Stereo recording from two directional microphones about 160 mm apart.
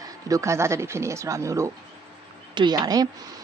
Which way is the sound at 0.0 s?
20° right (ahead or behind).